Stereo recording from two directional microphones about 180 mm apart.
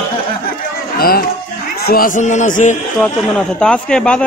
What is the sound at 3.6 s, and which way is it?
Speech, 5° left (ahead or behind).